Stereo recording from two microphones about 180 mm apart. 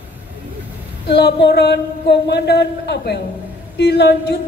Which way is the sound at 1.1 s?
65° left (ahead or behind).